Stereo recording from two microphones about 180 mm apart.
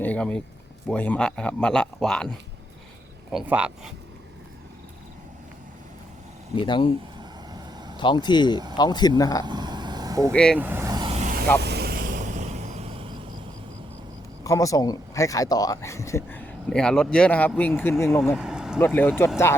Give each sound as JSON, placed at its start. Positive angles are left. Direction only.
{"t": 0.0, "sound": "speech", "side_deg": 10}
{"t": 3.3, "sound": "speech", "side_deg": -10}
{"t": 6.6, "sound": "speech", "side_deg": 25}
{"t": 7.2, "sound": "vehicle", "side_deg": -20}
{"t": 7.9, "sound": "speech", "side_deg": 25}
{"t": 9.4, "sound": "vehicle", "side_deg": -25}
{"t": 10.3, "sound": "speech", "side_deg": 5}
{"t": 10.6, "sound": "speech", "side_deg": -15}
{"t": 11.1, "sound": "vehicle", "side_deg": -40}
{"t": 11.6, "sound": "vehicle", "side_deg": -65}
{"t": 14.4, "sound": "speech", "side_deg": 20}
{"t": 16.6, "sound": "speech", "side_deg": 5}
{"t": 18.3, "sound": "a sound", "side_deg": -5}
{"t": 18.9, "sound": "speech", "side_deg": 10}